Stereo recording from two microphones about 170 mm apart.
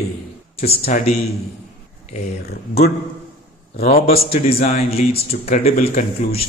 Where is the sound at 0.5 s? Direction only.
40° left (ahead or behind).